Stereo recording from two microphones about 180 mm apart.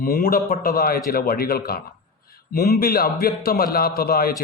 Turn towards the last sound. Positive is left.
turn(degrees=60)  # may be behind; listen again after turning